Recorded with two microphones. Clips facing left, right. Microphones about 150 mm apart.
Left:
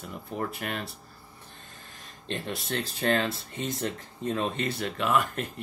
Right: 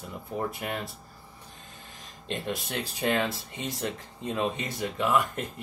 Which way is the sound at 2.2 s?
15° right (ahead or behind).